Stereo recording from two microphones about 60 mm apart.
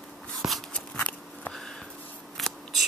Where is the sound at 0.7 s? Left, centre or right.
Centre.